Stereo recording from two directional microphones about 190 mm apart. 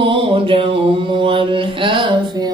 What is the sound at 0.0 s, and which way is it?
Mantra, 25° right (ahead or behind).